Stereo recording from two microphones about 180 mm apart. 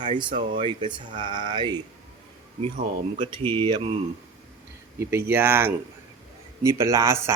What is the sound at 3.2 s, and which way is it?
Speech, 25° right (ahead or behind).